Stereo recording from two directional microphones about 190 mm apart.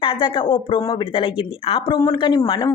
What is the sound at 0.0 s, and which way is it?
Speech, 25° left (ahead or behind).